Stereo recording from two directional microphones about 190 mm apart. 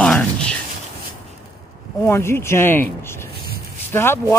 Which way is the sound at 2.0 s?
15° left (ahead or behind).